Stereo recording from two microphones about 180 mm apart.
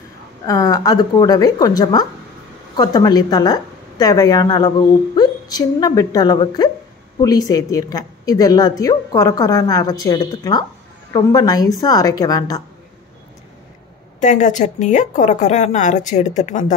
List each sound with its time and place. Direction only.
0.5 s a woman's voice: 20° left (ahead or behind)
14.2 s a woman's voice: 45° left (ahead or behind)